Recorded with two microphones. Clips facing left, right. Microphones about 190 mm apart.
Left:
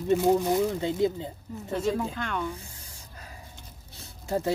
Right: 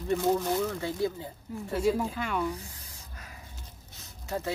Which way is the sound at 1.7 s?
5° right (ahead or behind).